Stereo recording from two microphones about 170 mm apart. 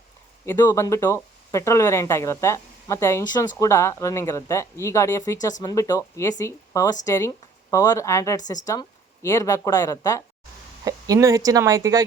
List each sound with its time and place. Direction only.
0.4 s speech: 20° left (ahead or behind)
10.8 s speech: 20° right (ahead or behind)